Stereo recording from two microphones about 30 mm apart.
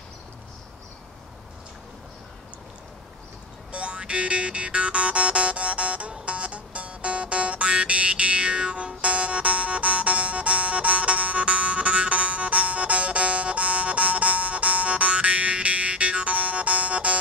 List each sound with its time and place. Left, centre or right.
3.7 s music: right